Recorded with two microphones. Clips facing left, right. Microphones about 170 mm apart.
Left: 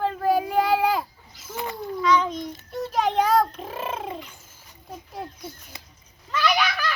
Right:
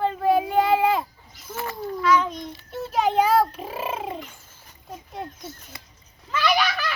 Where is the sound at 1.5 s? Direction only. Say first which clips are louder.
Even; 20° left (ahead or behind).